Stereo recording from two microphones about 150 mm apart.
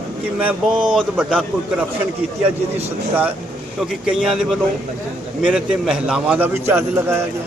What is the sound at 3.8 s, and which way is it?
A man's voice, 5° right (ahead or behind).